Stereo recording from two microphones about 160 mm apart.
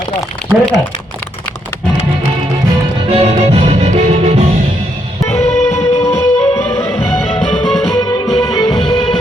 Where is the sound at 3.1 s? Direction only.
40° right (ahead or behind).